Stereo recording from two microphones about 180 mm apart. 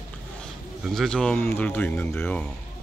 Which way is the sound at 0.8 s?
Centre (ahead or behind).